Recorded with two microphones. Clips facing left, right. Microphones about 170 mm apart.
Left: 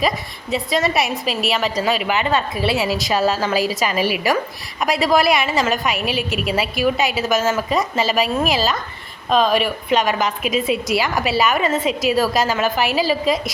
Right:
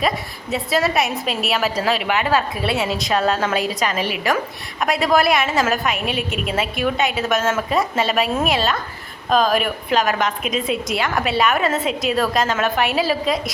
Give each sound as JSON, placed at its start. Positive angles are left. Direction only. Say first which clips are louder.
{"t": 0.5, "sound": "a woman's voice", "louder": "even", "side_deg": 0}